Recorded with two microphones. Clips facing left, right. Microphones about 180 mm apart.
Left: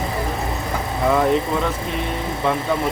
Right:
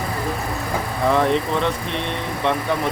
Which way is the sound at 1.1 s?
5° left (ahead or behind).